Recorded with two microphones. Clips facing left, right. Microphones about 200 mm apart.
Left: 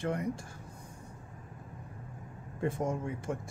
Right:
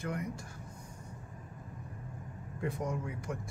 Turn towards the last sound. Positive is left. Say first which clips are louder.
# left 3 dB
turn(degrees=25)  # may be behind; listen again after turning